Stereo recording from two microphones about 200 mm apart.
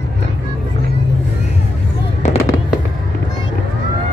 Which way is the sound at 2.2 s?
35° left (ahead or behind).